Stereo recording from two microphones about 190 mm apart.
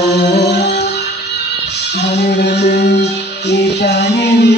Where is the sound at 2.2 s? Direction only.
60° left (ahead or behind).